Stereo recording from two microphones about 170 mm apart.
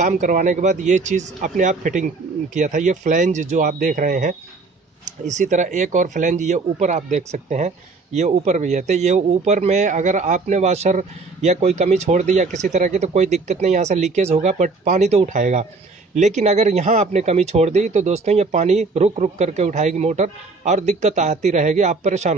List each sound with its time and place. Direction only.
0.0 s speech: 45° right (ahead or behind)